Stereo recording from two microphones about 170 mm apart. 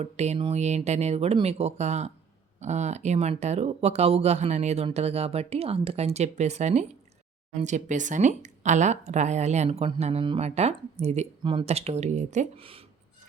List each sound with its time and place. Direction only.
0.0 s speech: 40° right (ahead or behind)